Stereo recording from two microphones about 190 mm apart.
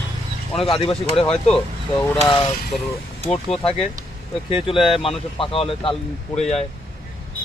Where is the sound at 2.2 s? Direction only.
25° left (ahead or behind).